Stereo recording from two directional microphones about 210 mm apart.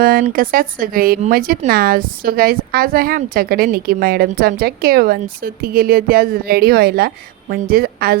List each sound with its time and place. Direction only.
0.0 s speech: 45° right (ahead or behind)